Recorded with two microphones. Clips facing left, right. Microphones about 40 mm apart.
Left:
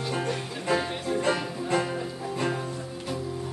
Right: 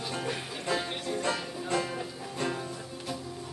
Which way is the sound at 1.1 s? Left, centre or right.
Centre.